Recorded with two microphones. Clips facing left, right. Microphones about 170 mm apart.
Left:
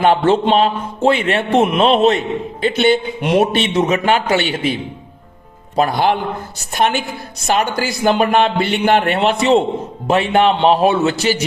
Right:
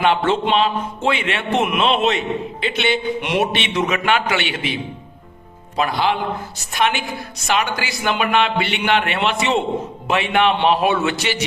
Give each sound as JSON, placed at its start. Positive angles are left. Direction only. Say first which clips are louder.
{"t": 0.0, "sound": "a man's voice", "louder": "left 4 dB", "side_deg": 40}